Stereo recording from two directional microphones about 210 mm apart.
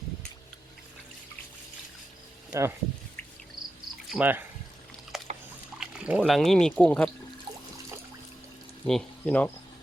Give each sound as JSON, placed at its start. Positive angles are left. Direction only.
{"t": 2.5, "sound": "speech", "side_deg": -10}
{"t": 3.6, "sound": "cricket", "side_deg": -20}
{"t": 4.1, "sound": "speech", "side_deg": -10}
{"t": 5.1, "sound": "a sound", "side_deg": 0}
{"t": 5.8, "sound": "speech", "side_deg": -5}
{"t": 8.9, "sound": "speech", "side_deg": 5}